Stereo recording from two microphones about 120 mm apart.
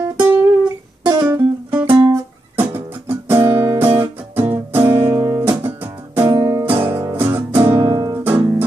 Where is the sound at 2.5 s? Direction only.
20° right (ahead or behind).